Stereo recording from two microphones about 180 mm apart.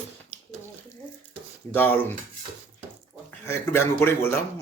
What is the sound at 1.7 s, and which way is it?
Speech, 10° left (ahead or behind).